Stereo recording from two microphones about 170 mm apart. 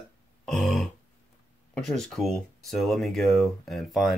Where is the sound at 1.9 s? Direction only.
Centre (ahead or behind).